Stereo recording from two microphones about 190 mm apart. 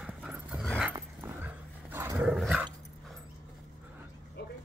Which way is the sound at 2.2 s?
Centre (ahead or behind).